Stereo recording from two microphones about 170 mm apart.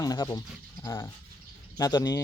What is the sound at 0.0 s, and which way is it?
A man's voice, 20° left (ahead or behind).